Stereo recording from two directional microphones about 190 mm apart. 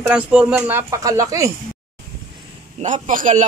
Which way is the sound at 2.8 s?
40° right (ahead or behind).